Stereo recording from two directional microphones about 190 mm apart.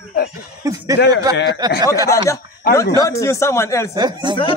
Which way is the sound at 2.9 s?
15° left (ahead or behind).